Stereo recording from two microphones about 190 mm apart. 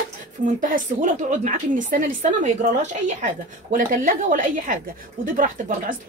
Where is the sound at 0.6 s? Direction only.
45° right (ahead or behind).